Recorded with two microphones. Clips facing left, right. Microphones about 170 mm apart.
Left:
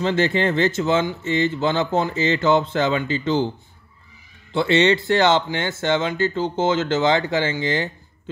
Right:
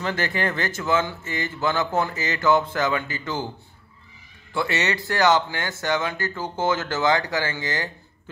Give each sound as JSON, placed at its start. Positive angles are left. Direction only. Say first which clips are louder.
{"t": 0.0, "sound": "speech", "louder": "left 6 dB", "side_deg": 25}
{"t": 4.6, "sound": "speech", "louder": "left 8 dB", "side_deg": 25}